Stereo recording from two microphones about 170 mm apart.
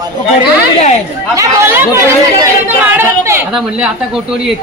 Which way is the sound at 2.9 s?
15° right (ahead or behind).